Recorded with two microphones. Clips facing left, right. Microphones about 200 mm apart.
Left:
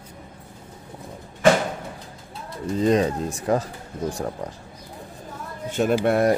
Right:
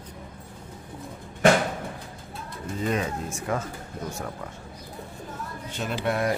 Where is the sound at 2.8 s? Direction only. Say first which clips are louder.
Left 8 dB; 35° left (ahead or behind).